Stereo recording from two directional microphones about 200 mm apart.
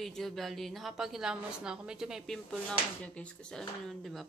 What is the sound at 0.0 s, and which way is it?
A woman's voice, centre (ahead or behind).